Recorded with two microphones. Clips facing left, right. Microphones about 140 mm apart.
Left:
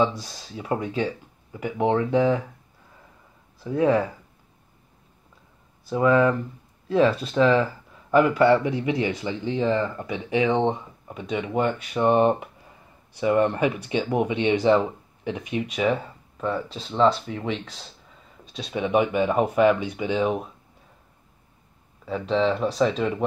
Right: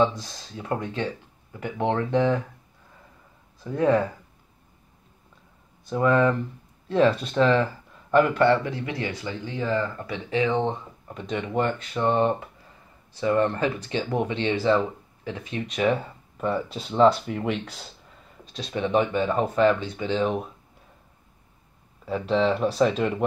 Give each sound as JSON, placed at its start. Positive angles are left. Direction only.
{"t": 0.0, "sound": "speech", "side_deg": 10}
{"t": 3.6, "sound": "speech", "side_deg": 5}
{"t": 5.9, "sound": "speech", "side_deg": 5}
{"t": 11.1, "sound": "speech", "side_deg": 5}
{"t": 15.7, "sound": "speech", "side_deg": 0}
{"t": 18.5, "sound": "speech", "side_deg": 5}
{"t": 22.0, "sound": "speech", "side_deg": -5}